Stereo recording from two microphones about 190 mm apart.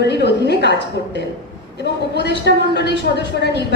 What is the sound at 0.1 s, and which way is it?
A woman's voice, 60° left (ahead or behind).